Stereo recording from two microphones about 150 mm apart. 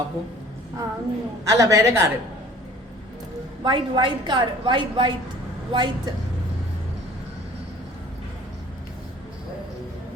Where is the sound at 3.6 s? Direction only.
30° right (ahead or behind).